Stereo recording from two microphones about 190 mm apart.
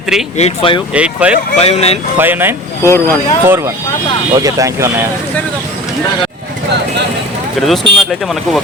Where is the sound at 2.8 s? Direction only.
15° left (ahead or behind).